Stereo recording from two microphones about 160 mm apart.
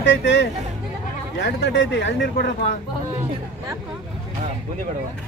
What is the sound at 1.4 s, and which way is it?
Speech, 90° left.